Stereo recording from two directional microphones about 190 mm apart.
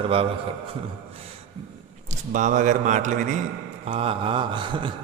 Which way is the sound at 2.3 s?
40° right (ahead or behind).